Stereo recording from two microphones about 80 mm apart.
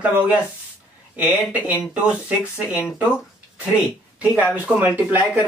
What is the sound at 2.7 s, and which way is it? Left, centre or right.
Speech, left.